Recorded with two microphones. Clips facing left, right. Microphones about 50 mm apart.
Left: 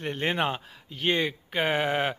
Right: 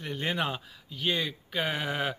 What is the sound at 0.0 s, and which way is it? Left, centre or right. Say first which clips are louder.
A man's voice: left 4 dB; left.